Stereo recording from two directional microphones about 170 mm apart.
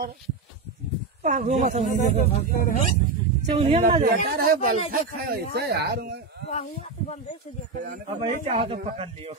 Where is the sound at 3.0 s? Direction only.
40° right (ahead or behind).